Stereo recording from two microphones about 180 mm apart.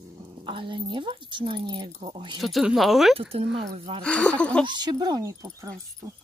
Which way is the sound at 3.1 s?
30° right (ahead or behind).